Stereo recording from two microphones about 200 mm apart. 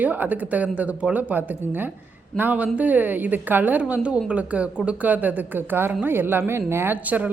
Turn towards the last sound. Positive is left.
turn(degrees=-10)  # may be behind; listen again after turning